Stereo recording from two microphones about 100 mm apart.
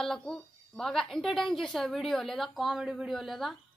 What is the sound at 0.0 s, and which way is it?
A woman's voice, 5° left (ahead or behind).